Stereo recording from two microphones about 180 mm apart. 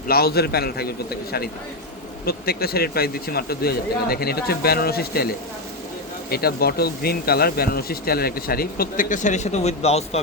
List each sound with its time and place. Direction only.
0.1 s speech: 60° left (ahead or behind)
6.3 s speech: 60° left (ahead or behind); by 10.2 s 35° left (ahead or behind)